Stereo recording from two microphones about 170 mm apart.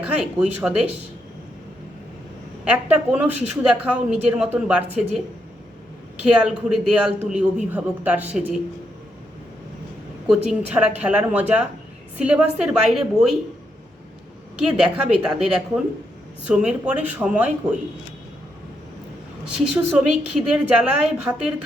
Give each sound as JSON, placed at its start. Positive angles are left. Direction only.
{"t": 0.0, "sound": "speech", "side_deg": -5}
{"t": 2.6, "sound": "a woman's voice", "side_deg": -10}
{"t": 6.4, "sound": "a woman's voice", "side_deg": -5}
{"t": 10.2, "sound": "a woman's voice", "side_deg": -5}
{"t": 14.5, "sound": "a woman's voice", "side_deg": -5}
{"t": 19.9, "sound": "a woman's voice", "side_deg": -5}